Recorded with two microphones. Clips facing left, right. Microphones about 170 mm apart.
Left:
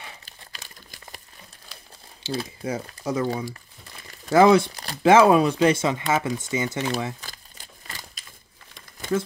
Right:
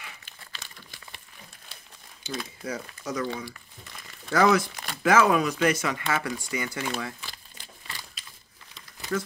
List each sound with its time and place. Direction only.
0.0 s crumpling: 40° left (ahead or behind)
2.2 s speech: 30° left (ahead or behind)
4.3 s speech: 25° left (ahead or behind)
7.2 s a sound: 40° left (ahead or behind)